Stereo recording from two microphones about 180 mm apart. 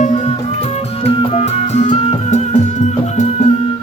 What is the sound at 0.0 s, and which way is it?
Music, 40° left (ahead or behind).